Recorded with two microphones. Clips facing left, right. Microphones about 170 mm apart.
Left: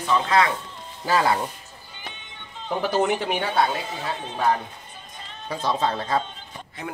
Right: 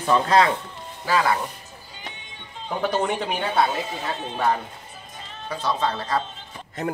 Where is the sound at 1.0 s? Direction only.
25° left (ahead or behind).